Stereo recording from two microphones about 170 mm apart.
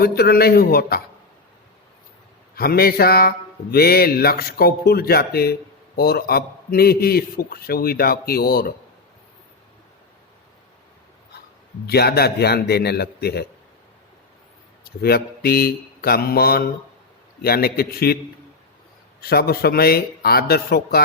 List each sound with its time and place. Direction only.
0.0 s a man's voice: 65° left (ahead or behind)
2.6 s a man's voice: 65° left (ahead or behind)
11.9 s a man's voice: 70° left (ahead or behind)
15.0 s a man's voice: 65° left (ahead or behind)
19.2 s a man's voice: 65° left (ahead or behind)